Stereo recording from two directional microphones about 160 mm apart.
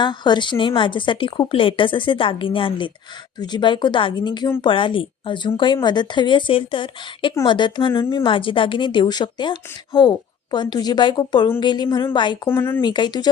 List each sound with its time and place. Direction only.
0.0 s a woman's voice: 30° left (ahead or behind)
12.5 s speech: 15° left (ahead or behind)
12.8 s a woman's voice: 25° left (ahead or behind)